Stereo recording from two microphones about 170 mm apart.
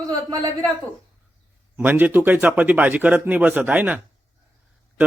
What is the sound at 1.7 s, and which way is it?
Speech, 10° right (ahead or behind).